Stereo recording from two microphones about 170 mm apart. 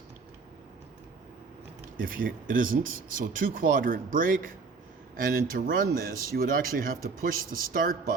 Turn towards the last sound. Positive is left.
turn(degrees=-55)  # may be behind; listen again after turning